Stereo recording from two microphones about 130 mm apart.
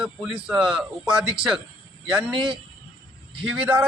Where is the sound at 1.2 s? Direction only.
40° right (ahead or behind).